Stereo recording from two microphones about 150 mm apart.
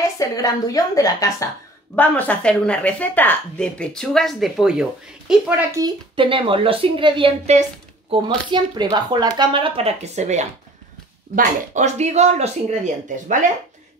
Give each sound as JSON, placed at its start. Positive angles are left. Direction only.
{"t": 0.2, "sound": "a woman's voice", "side_deg": 25}
{"t": 2.0, "sound": "a woman's voice", "side_deg": 10}
{"t": 5.8, "sound": "a woman's voice", "side_deg": -30}